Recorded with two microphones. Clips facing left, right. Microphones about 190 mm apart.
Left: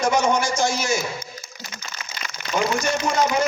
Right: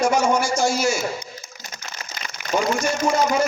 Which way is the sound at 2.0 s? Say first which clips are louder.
Right 1 dB; 40° right (ahead or behind).